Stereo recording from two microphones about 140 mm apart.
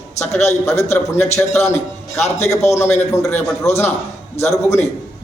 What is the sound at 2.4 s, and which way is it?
A man's voice, 20° left (ahead or behind).